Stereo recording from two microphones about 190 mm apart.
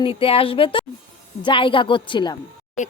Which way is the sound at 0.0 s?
30° left (ahead or behind).